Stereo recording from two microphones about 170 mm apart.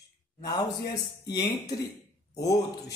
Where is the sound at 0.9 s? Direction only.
20° left (ahead or behind).